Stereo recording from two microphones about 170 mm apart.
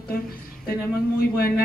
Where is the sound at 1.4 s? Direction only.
60° left (ahead or behind).